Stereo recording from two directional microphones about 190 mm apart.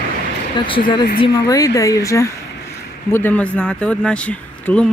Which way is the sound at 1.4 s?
20° left (ahead or behind).